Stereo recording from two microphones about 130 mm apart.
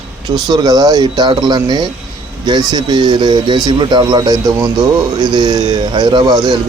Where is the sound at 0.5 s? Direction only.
30° right (ahead or behind).